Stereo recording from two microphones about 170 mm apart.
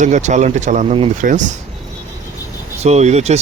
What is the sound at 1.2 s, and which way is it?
Speech, 45° right (ahead or behind).